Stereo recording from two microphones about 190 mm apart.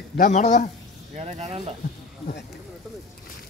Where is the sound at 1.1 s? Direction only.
35° right (ahead or behind).